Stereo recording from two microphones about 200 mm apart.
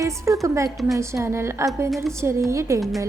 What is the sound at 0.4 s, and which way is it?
A woman's voice, 15° right (ahead or behind).